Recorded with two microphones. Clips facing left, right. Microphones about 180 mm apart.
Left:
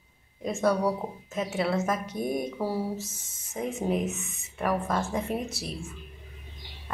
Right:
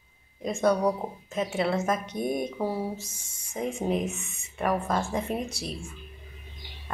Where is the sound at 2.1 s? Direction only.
20° right (ahead or behind).